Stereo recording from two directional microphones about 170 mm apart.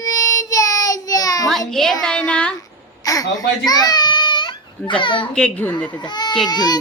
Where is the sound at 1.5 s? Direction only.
Centre (ahead or behind).